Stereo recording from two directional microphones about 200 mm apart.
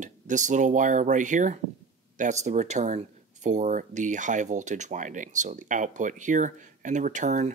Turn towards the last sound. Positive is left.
turn(degrees=-40)  # may be behind; listen again after turning